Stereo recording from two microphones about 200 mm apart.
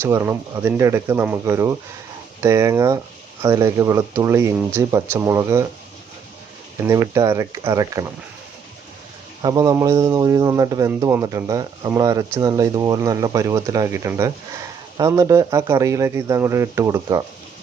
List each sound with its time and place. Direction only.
0.0 s a man's voice: 15° right (ahead or behind)
6.8 s a man's voice: 15° right (ahead or behind)
9.4 s a man's voice: 20° right (ahead or behind)